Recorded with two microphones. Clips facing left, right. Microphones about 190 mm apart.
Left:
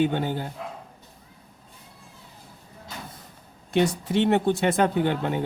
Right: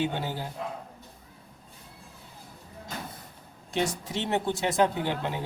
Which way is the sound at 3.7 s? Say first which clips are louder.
Left 7 dB; 60° left (ahead or behind).